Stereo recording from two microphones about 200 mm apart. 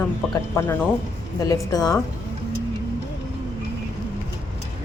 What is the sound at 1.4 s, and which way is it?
Speech, 20° left (ahead or behind).